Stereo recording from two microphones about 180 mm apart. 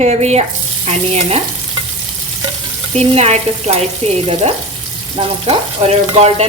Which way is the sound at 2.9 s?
35° right (ahead or behind).